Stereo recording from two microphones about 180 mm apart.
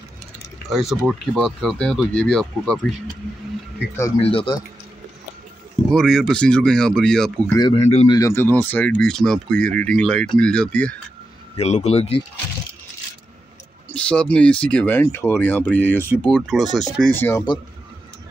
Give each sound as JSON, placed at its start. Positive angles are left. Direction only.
{"t": 0.7, "sound": "speech", "side_deg": 0}
{"t": 4.2, "sound": "speech", "side_deg": 30}
{"t": 5.9, "sound": "speech", "side_deg": 0}
{"t": 7.5, "sound": "speech", "side_deg": 25}
{"t": 7.8, "sound": "speech", "side_deg": 35}
{"t": 8.1, "sound": "speech", "side_deg": 15}
{"t": 11.5, "sound": "speech", "side_deg": 35}
{"t": 13.9, "sound": "speech", "side_deg": 5}